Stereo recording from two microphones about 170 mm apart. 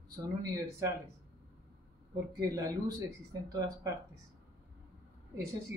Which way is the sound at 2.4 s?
20° right (ahead or behind).